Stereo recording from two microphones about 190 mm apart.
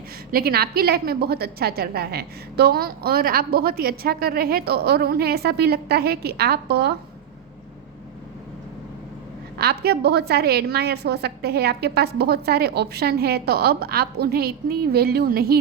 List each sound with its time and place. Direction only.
0.3 s a woman's voice: 50° right (ahead or behind)
9.6 s a woman's voice: 55° right (ahead or behind)